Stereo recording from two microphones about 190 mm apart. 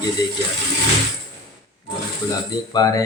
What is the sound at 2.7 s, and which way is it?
Speech, 20° left (ahead or behind).